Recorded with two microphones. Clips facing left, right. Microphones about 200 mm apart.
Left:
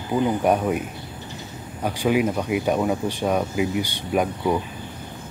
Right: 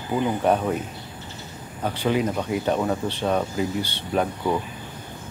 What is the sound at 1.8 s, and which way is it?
Speech, 10° left (ahead or behind).